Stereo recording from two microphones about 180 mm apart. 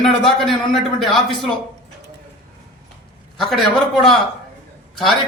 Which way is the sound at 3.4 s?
Centre (ahead or behind).